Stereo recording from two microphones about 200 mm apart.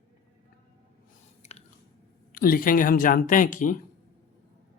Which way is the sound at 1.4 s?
35° left (ahead or behind).